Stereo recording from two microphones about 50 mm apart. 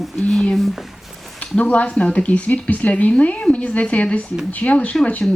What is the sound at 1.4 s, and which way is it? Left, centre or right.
Speech, left.